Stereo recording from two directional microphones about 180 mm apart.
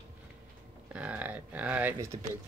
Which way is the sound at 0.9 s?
10° right (ahead or behind).